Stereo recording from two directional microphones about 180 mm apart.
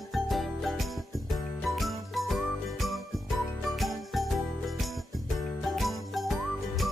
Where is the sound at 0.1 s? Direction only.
Centre (ahead or behind).